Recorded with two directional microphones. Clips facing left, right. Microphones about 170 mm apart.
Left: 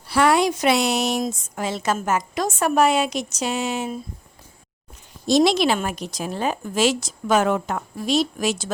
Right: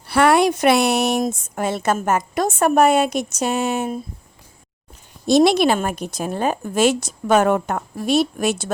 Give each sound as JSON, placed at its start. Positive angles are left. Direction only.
{"t": 0.1, "sound": "a woman's voice", "side_deg": -60}
{"t": 5.2, "sound": "a woman's voice", "side_deg": -55}